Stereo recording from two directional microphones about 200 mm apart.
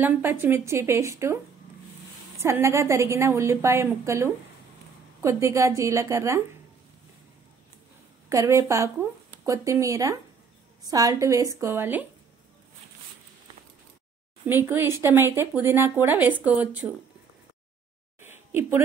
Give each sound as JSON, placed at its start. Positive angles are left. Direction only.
{"t": 0.0, "sound": "speech", "side_deg": -10}
{"t": 2.4, "sound": "speech", "side_deg": -15}
{"t": 8.3, "sound": "speech", "side_deg": -15}
{"t": 14.4, "sound": "speech", "side_deg": -10}
{"t": 18.2, "sound": "a sound", "side_deg": -10}